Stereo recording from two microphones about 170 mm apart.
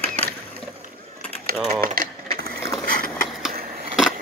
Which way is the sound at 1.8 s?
55° right (ahead or behind).